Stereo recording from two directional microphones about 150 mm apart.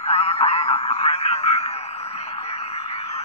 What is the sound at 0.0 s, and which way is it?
Radio, 45° left (ahead or behind).